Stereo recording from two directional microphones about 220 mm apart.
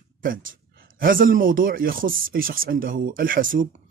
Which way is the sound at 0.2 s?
40° right (ahead or behind).